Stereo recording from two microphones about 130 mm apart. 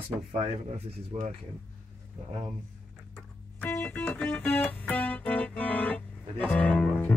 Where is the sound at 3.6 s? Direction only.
15° left (ahead or behind).